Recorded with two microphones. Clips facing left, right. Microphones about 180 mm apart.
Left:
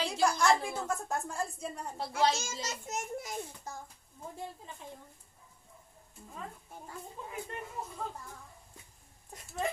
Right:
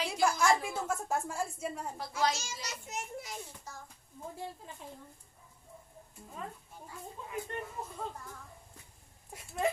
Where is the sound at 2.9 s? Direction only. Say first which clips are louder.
Left 2 dB; 45° left (ahead or behind).